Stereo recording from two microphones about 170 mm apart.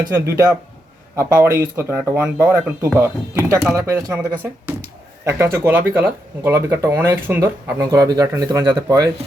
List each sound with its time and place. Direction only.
0.1 s speech: 15° right (ahead or behind)